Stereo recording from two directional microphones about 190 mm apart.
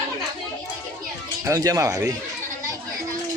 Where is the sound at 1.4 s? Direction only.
20° right (ahead or behind).